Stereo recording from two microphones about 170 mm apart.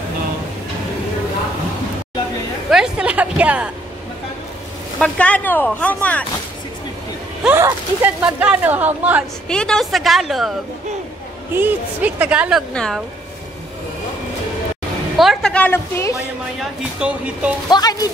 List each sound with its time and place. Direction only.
2.7 s speech: 5° right (ahead or behind)
4.9 s speech: 5° left (ahead or behind)
7.4 s speech: 10° right (ahead or behind)
9.5 s speech: 5° left (ahead or behind)
11.5 s speech: 10° right (ahead or behind)
15.1 s speech: centre (ahead or behind)
16.5 s speech: 5° right (ahead or behind)
17.6 s speech: 25° left (ahead or behind)